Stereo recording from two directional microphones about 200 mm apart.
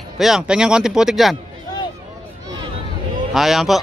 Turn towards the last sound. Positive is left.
turn(degrees=0)  # may be behind; listen again after turning